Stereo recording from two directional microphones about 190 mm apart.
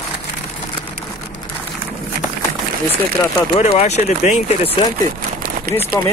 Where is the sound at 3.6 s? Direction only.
35° left (ahead or behind).